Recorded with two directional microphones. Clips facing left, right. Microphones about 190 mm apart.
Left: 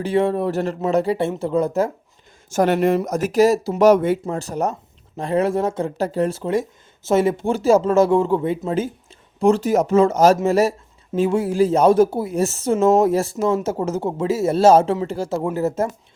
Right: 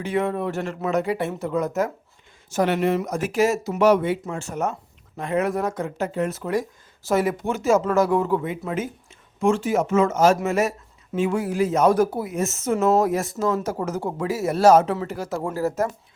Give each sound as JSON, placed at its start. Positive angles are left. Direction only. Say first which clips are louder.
{"t": 0.0, "sound": "speech", "louder": "left 5 dB", "side_deg": 30}
{"t": 2.5, "sound": "speech", "louder": "left 4 dB", "side_deg": 45}